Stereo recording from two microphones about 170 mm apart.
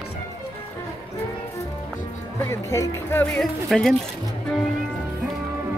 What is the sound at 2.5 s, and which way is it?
Speech, 15° left (ahead or behind).